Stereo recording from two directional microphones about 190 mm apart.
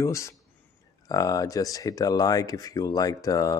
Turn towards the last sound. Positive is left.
turn(degrees=20)  # may be behind; listen again after turning